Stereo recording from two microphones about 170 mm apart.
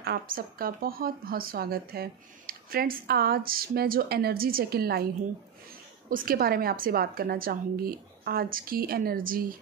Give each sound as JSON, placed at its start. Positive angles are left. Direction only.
{"t": 0.0, "sound": "speech", "side_deg": -60}
{"t": 6.0, "sound": "speech", "side_deg": -60}